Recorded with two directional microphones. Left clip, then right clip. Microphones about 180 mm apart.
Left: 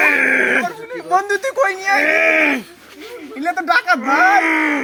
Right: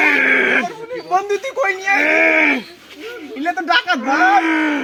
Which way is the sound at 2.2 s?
25° left (ahead or behind).